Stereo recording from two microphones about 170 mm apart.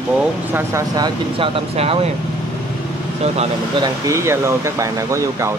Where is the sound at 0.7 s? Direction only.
25° right (ahead or behind).